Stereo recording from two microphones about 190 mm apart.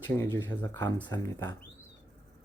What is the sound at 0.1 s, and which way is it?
Speech, 10° left (ahead or behind).